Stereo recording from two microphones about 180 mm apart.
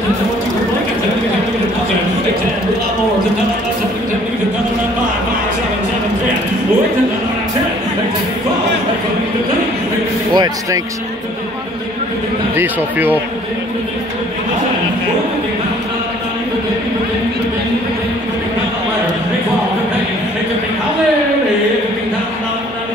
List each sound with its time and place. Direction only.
10.3 s speech: 25° right (ahead or behind)
12.5 s speech: 10° right (ahead or behind)